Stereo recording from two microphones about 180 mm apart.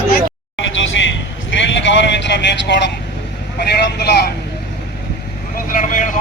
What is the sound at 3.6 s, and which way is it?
Speech, 65° left (ahead or behind).